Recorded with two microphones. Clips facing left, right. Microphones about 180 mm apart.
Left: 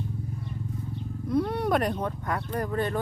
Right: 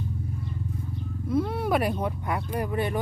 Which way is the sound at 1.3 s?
Centre (ahead or behind).